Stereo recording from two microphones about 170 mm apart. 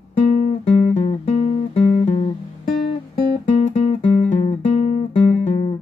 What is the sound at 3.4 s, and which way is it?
Music, 40° left (ahead or behind).